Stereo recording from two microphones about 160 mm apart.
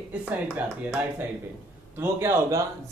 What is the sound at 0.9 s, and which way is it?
A man's voice, 10° right (ahead or behind).